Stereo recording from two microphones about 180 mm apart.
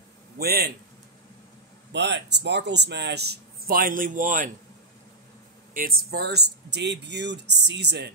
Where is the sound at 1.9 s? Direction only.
75° right (ahead or behind); by 4.5 s 45° right (ahead or behind).